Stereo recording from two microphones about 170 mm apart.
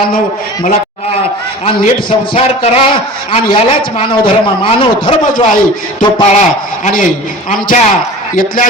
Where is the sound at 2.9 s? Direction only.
30° left (ahead or behind).